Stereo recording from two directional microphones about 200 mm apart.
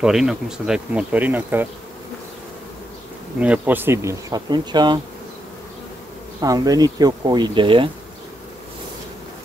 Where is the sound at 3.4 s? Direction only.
5° right (ahead or behind).